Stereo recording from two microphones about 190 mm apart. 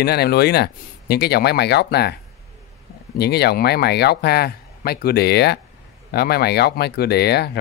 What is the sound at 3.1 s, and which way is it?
Speech, 60° left (ahead or behind).